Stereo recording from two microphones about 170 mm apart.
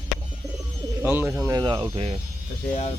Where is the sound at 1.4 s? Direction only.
25° right (ahead or behind).